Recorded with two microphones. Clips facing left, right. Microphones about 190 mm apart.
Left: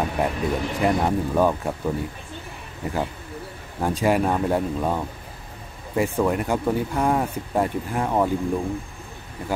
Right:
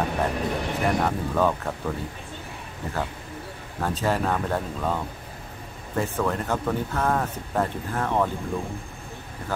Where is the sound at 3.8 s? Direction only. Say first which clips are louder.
Left 4 dB; 15° left (ahead or behind).